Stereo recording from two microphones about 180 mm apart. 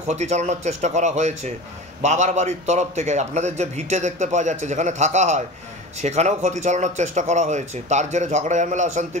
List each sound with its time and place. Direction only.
0.1 s a man's voice: 40° right (ahead or behind)